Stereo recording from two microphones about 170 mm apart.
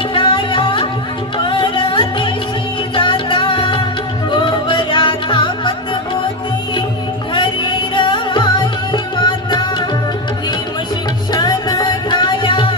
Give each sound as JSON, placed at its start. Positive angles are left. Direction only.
{"t": 0.1, "sound": "music", "side_deg": 30}
{"t": 7.3, "sound": "music", "side_deg": 30}
{"t": 11.3, "sound": "music", "side_deg": 25}